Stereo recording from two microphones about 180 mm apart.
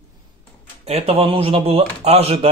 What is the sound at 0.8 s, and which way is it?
Speech, 35° right (ahead or behind).